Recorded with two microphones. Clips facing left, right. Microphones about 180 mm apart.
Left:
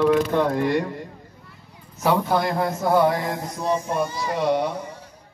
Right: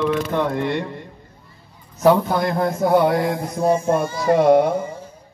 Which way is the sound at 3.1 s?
50° right (ahead or behind).